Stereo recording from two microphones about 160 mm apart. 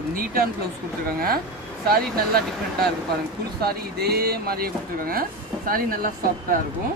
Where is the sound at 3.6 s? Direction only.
75° right (ahead or behind); by 6.6 s 60° right (ahead or behind).